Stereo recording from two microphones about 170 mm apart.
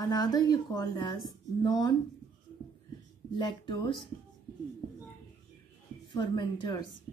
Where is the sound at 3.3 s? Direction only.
25° left (ahead or behind).